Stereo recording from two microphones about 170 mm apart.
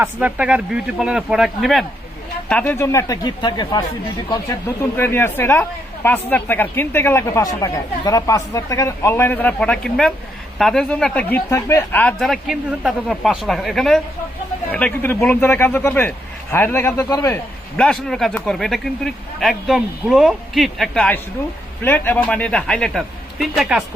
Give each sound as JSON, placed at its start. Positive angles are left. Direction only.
{"t": 0.0, "sound": "speech", "side_deg": -10}
{"t": 4.8, "sound": "speech", "side_deg": 15}